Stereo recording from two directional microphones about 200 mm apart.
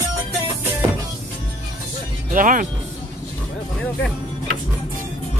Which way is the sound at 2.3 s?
40° right (ahead or behind).